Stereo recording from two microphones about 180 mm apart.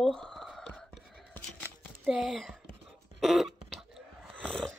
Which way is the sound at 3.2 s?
Centre (ahead or behind).